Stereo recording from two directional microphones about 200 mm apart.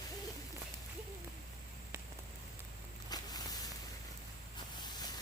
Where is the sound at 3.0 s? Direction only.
20° left (ahead or behind).